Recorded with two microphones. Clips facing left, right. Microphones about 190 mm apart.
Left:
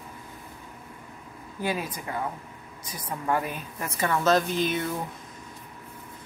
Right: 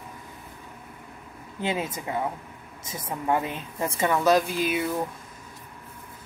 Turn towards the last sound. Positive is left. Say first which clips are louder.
# right 1 dB
turn(degrees=-10)  # may be behind; listen again after turning